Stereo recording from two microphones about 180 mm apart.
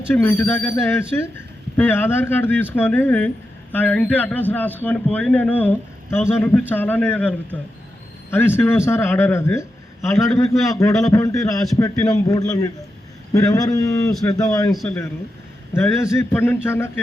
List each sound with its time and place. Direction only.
0.1 s a man's voice: 10° left (ahead or behind)